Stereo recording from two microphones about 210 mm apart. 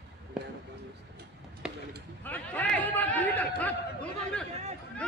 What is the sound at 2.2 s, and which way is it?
Chatter, 10° left (ahead or behind).